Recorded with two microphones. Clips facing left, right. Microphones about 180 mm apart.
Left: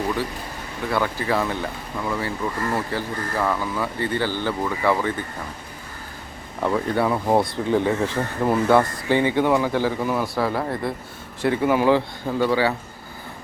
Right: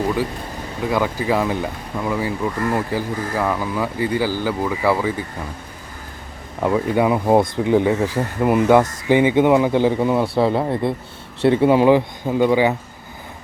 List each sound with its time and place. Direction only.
0.9 s speech: 15° right (ahead or behind)
6.6 s speech: 15° right (ahead or behind)